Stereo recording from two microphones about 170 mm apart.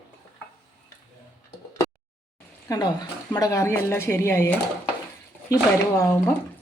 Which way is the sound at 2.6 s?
20° left (ahead or behind).